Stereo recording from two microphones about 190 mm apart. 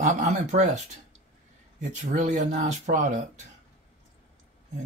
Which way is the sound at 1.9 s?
40° right (ahead or behind).